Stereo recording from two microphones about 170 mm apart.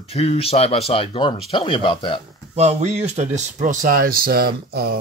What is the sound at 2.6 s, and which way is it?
Speech, 40° right (ahead or behind).